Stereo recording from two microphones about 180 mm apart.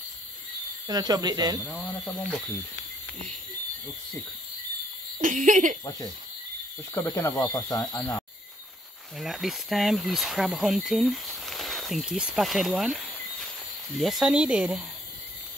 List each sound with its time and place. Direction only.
0.8 s speech: 20° right (ahead or behind)
1.6 s speech: 5° left (ahead or behind)
5.2 s speech: 45° right (ahead or behind)
6.9 s speech: 15° left (ahead or behind)
9.2 s speech: centre (ahead or behind)